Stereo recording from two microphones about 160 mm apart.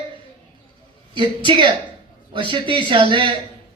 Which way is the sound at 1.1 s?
30° right (ahead or behind).